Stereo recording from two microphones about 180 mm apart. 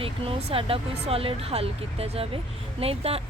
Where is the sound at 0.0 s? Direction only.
30° right (ahead or behind).